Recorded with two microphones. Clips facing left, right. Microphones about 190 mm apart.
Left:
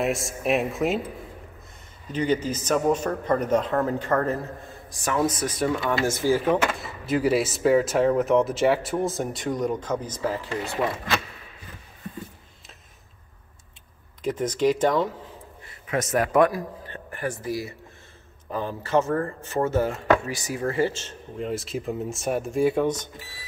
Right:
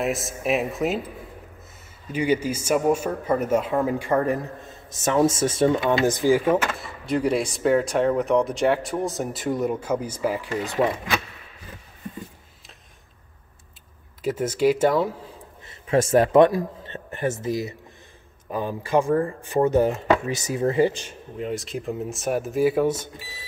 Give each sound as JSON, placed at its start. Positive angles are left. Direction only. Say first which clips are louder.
{"t": 0.0, "sound": "speech", "louder": "even", "side_deg": 0}
{"t": 2.1, "sound": "speech", "louder": "right 2 dB", "side_deg": -10}
{"t": 4.9, "sound": "speech", "louder": "right 4 dB", "side_deg": -25}
{"t": 14.2, "sound": "speech", "louder": "right 2 dB", "side_deg": -5}
{"t": 15.6, "sound": "speech", "louder": "right 6 dB", "side_deg": -30}
{"t": 21.4, "sound": "speech", "louder": "even", "side_deg": 0}